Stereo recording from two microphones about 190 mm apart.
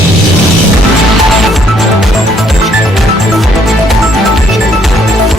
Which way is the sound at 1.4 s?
Centre (ahead or behind).